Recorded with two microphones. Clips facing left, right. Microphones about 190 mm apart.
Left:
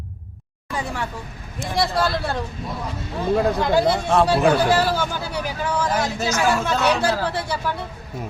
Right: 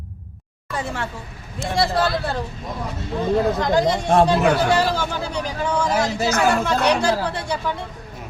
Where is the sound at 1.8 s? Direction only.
Centre (ahead or behind).